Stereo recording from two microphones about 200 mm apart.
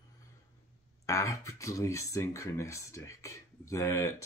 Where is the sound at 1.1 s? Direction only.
15° left (ahead or behind).